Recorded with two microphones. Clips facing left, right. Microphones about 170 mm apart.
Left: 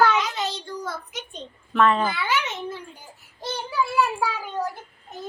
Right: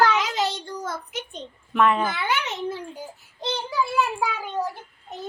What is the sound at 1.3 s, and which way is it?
Speech, 15° right (ahead or behind).